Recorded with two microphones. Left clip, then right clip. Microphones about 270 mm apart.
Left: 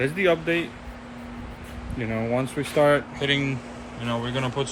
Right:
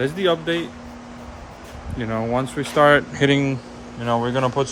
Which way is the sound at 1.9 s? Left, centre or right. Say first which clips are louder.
Right 3 dB; centre.